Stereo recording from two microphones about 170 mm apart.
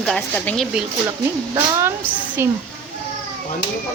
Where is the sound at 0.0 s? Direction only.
5° left (ahead or behind).